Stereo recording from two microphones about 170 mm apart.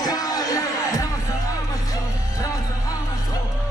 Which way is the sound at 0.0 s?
20° left (ahead or behind).